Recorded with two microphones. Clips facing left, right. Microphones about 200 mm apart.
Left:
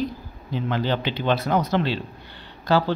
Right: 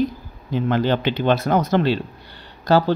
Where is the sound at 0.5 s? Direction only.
50° right (ahead or behind).